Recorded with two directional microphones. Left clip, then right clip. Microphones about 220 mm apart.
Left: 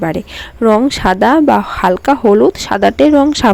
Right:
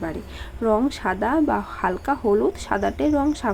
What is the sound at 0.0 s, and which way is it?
A woman's voice, 40° left (ahead or behind).